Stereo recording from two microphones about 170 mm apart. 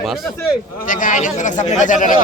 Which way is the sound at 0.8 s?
50° left (ahead or behind).